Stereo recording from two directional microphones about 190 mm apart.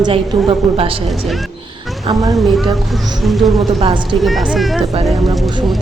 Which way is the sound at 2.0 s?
20° right (ahead or behind).